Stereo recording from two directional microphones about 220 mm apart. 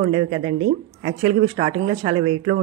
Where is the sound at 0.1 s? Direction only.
25° right (ahead or behind).